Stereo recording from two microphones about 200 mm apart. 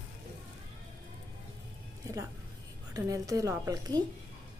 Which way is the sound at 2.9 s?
15° right (ahead or behind).